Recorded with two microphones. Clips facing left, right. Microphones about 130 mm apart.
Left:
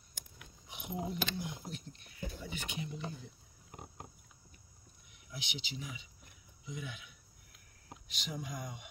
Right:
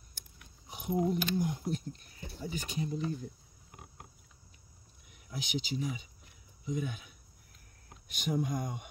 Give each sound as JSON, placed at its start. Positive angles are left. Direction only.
{"t": 0.7, "sound": "speech", "side_deg": -40}
{"t": 5.3, "sound": "speech", "side_deg": -45}